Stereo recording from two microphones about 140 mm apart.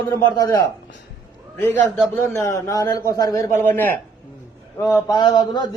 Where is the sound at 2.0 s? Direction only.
20° left (ahead or behind).